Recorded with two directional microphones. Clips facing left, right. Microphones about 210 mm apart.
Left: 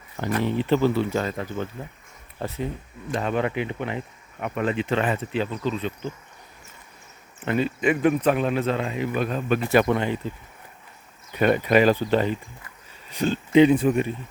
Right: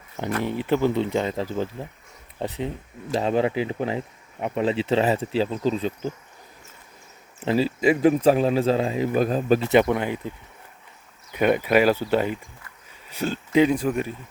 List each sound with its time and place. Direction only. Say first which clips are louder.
0.4 s speech: left 1 dB; 10° right (ahead or behind); by 1.9 s 30° right (ahead or behind)
3.2 s speech: right 3 dB; 30° right (ahead or behind)
7.4 s speech: right 2 dB; 30° right (ahead or behind)
9.6 s speech: right 1 dB; 15° right (ahead or behind); by 14.1 s centre (ahead or behind)